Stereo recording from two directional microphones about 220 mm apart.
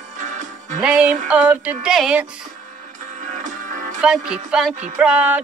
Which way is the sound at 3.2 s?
35° right (ahead or behind).